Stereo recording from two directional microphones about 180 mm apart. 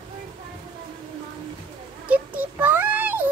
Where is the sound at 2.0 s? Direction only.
10° right (ahead or behind).